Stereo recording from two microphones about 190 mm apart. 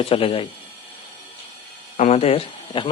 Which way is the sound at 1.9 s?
35° left (ahead or behind).